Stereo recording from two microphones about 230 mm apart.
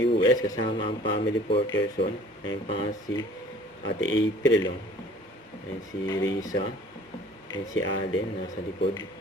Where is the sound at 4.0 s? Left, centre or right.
Left.